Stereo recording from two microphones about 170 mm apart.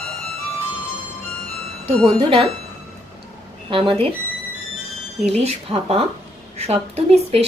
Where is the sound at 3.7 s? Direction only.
30° right (ahead or behind).